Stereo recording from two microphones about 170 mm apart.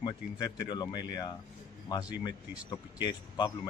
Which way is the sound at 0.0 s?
25° left (ahead or behind).